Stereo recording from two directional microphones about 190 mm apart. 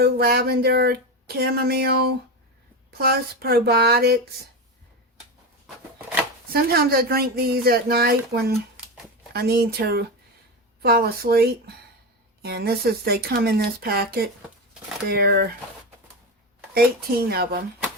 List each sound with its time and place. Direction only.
0.0 s speech: 55° right (ahead or behind)
6.5 s speech: 55° right (ahead or behind)
17.2 s speech: 55° right (ahead or behind)